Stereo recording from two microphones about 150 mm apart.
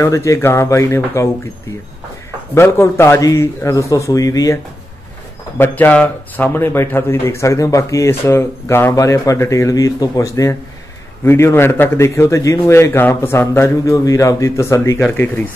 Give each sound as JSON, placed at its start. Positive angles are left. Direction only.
{"t": 0.0, "sound": "speech", "side_deg": 20}
{"t": 2.5, "sound": "speech", "side_deg": 15}
{"t": 5.6, "sound": "a man's voice", "side_deg": 10}